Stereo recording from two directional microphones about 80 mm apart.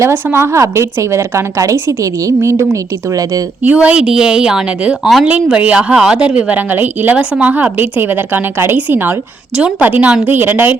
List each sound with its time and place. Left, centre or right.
0.0 s a woman's voice: right
3.6 s a woman's voice: centre
5.2 s a woman's voice: centre